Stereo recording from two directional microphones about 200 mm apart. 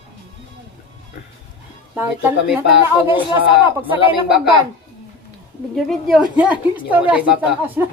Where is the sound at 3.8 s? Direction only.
25° left (ahead or behind).